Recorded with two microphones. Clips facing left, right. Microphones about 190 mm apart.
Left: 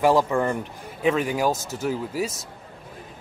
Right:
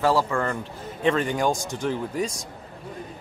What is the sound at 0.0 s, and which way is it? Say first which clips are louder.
A man's voice: left 3 dB; 15° left (ahead or behind).